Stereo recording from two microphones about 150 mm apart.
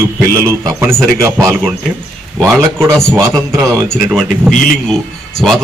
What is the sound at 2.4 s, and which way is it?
A man's voice, 15° right (ahead or behind).